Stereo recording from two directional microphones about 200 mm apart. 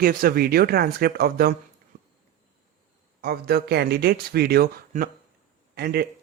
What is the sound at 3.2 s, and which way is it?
A man's voice, 50° right (ahead or behind).